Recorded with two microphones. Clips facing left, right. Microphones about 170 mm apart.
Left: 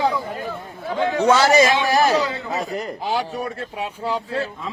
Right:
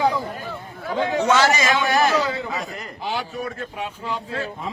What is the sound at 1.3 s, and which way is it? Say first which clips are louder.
A man's voice: left 5 dB; 35° left (ahead or behind).